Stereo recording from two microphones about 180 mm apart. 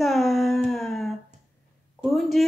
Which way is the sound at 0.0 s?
Centre (ahead or behind).